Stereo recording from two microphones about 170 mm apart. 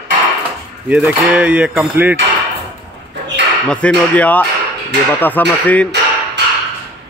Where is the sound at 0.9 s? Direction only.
5° right (ahead or behind).